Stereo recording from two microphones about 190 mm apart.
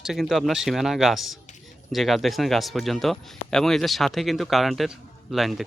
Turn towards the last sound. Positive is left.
turn(degrees=0)  # may be behind; listen again after turning